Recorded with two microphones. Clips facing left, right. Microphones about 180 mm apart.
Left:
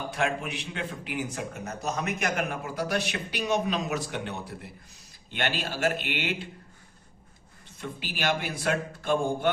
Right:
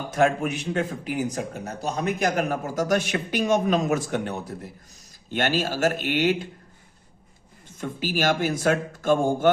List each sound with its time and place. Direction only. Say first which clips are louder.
0.1 s speech: right 10 dB; 45° right (ahead or behind)
7.8 s speech: right 8 dB; 45° right (ahead or behind)